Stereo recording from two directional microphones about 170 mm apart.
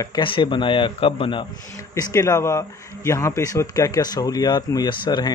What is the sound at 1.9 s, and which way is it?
Speech, 15° left (ahead or behind).